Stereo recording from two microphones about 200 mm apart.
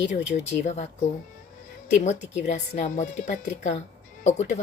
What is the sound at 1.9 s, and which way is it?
Speech, 35° left (ahead or behind).